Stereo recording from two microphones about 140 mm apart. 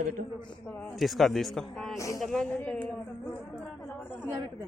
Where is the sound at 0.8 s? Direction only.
5° left (ahead or behind).